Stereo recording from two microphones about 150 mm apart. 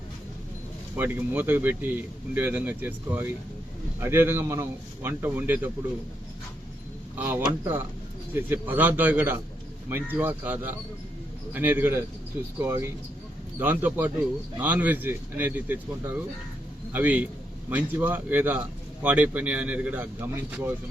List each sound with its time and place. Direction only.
0.9 s speech: 10° right (ahead or behind)
7.2 s speech: 15° right (ahead or behind)